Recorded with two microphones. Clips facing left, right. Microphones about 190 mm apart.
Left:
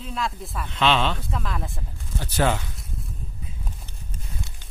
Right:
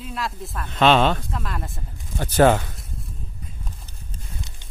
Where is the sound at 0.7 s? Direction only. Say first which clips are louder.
Right 5 dB; 50° right (ahead or behind).